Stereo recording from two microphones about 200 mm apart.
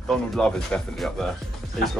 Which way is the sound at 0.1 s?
5° left (ahead or behind).